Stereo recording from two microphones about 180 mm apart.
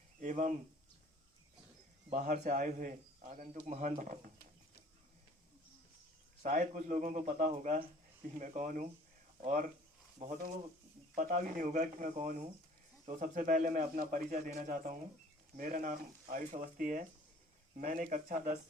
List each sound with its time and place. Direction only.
0.2 s a sound: 45° right (ahead or behind)
2.1 s a man's voice: 45° right (ahead or behind)
6.4 s a man's voice: 45° right (ahead or behind)